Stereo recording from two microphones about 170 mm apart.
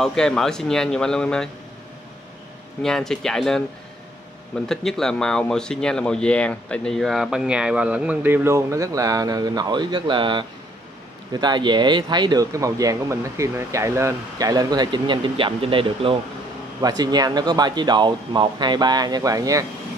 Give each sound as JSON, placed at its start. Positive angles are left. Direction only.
{"t": 0.0, "sound": "speech", "side_deg": 5}
{"t": 2.8, "sound": "speech", "side_deg": 5}
{"t": 4.6, "sound": "speech", "side_deg": 0}